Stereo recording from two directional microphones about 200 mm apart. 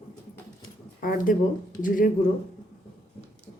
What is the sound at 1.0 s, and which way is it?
Speech, 45° left (ahead or behind).